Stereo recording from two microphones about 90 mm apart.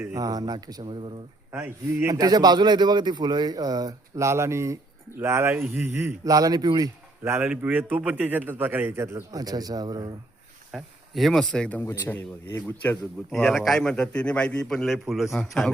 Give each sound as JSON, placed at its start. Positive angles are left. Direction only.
{"t": 0.1, "sound": "a man's voice", "side_deg": -45}
{"t": 0.9, "sound": "speech", "side_deg": -70}
{"t": 1.5, "sound": "a man's voice", "side_deg": -25}
{"t": 2.0, "sound": "a man's voice", "side_deg": -45}
{"t": 6.2, "sound": "a man's voice", "side_deg": -45}
{"t": 7.3, "sound": "a man's voice", "side_deg": -20}
{"t": 9.3, "sound": "a man's voice", "side_deg": -45}
{"t": 10.7, "sound": "speech", "side_deg": 0}
{"t": 11.8, "sound": "speech", "side_deg": 25}
{"t": 13.3, "sound": "speech", "side_deg": 5}